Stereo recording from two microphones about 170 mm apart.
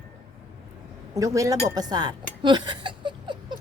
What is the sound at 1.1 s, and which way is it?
Speech, 20° right (ahead or behind).